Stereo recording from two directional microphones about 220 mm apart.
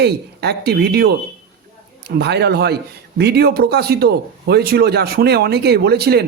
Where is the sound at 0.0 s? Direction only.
50° right (ahead or behind).